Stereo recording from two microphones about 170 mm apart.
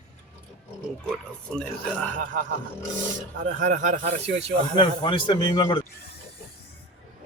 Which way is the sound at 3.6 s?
50° right (ahead or behind).